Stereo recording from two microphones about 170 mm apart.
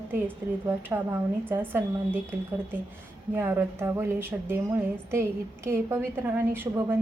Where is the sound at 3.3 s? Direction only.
15° right (ahead or behind).